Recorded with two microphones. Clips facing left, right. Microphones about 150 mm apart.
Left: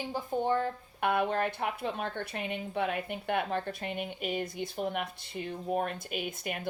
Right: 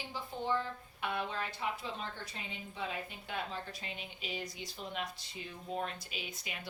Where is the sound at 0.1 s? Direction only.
50° left (ahead or behind).